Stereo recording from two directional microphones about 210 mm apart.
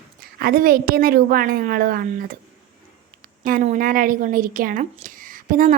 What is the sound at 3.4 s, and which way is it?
A woman's voice, 40° right (ahead or behind).